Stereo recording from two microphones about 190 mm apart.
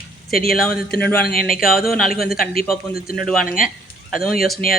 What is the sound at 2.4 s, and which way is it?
Speech, 50° left (ahead or behind).